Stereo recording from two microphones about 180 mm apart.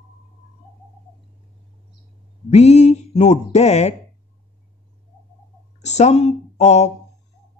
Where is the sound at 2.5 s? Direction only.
35° left (ahead or behind).